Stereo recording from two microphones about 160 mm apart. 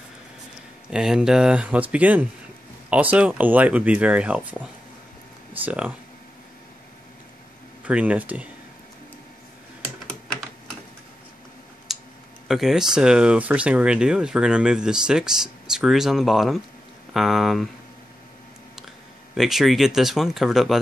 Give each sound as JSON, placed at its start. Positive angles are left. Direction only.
{"t": 0.8, "sound": "speech", "side_deg": -5}
{"t": 7.8, "sound": "speech", "side_deg": -10}
{"t": 11.9, "sound": "a sound", "side_deg": 0}
{"t": 12.4, "sound": "speech", "side_deg": 0}
{"t": 19.3, "sound": "speech", "side_deg": 0}